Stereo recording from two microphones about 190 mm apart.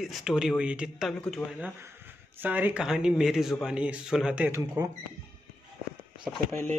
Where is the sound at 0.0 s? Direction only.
Centre (ahead or behind).